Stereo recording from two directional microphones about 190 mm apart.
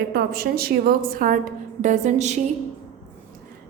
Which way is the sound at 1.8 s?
40° right (ahead or behind).